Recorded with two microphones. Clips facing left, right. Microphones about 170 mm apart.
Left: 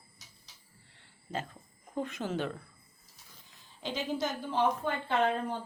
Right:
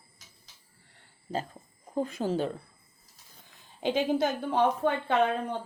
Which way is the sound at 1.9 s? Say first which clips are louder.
Right 5 dB; 35° right (ahead or behind).